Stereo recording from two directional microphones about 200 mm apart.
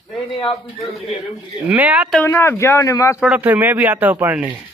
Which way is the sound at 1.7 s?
5° right (ahead or behind).